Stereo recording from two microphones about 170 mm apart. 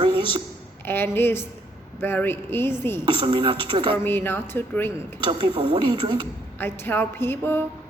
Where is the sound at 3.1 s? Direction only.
30° right (ahead or behind).